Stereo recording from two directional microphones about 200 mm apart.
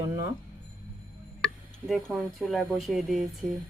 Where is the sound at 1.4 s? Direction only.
Centre (ahead or behind).